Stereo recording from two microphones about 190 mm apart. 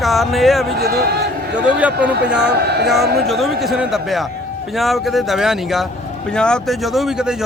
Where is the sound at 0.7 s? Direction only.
55° right (ahead or behind).